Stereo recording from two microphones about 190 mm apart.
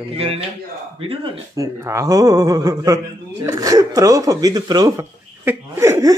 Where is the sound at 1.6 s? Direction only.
15° right (ahead or behind).